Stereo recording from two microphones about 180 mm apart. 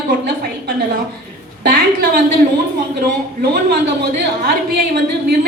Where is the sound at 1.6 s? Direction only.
60° right (ahead or behind).